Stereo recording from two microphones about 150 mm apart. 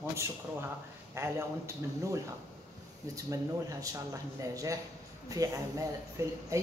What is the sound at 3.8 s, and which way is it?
Speech, 20° right (ahead or behind).